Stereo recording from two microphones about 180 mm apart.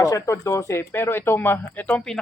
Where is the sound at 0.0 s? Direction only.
15° left (ahead or behind).